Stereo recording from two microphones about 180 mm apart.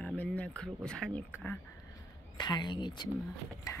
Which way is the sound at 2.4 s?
25° left (ahead or behind).